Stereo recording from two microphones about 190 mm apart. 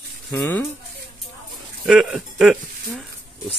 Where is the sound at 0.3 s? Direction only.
10° left (ahead or behind).